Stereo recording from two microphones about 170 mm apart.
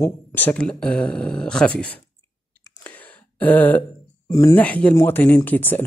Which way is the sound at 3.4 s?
10° left (ahead or behind).